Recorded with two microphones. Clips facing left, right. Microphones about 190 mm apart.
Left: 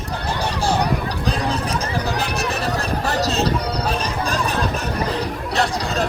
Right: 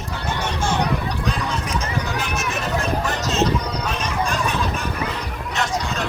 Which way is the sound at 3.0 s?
35° left (ahead or behind).